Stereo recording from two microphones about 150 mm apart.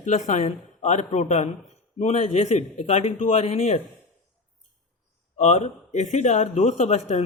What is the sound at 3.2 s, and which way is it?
Speech, 60° left (ahead or behind).